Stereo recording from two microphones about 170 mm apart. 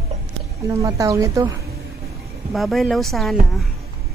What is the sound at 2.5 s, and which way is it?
Speech, centre (ahead or behind).